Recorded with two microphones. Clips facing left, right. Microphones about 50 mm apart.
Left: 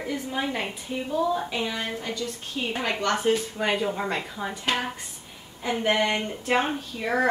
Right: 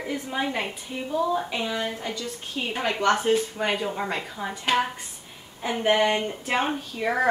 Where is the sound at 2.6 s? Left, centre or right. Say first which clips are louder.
Even; centre.